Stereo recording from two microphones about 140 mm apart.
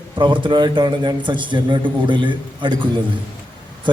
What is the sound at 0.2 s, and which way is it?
A man's voice, 35° right (ahead or behind).